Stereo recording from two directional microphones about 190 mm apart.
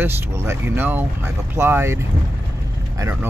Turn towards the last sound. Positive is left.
turn(degrees=-10)  # may be behind; listen again after turning